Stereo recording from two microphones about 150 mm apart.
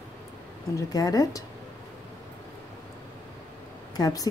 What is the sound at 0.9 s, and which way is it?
Speech, 25° left (ahead or behind).